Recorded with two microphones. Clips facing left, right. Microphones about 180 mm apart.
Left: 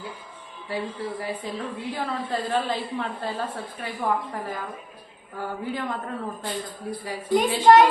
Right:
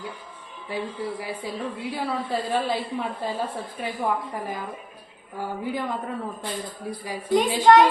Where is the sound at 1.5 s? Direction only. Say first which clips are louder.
Right 1 dB; 10° right (ahead or behind).